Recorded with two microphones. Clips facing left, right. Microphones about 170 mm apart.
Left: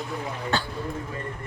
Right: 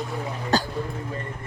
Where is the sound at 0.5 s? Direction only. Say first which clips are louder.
Right 5 dB; 40° right (ahead or behind).